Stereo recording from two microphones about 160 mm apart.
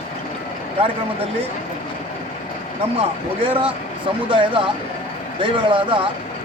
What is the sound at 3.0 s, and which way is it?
Speech, 35° right (ahead or behind).